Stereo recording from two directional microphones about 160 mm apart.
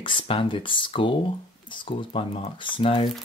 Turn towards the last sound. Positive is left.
turn(degrees=35)  # may be behind; listen again after turning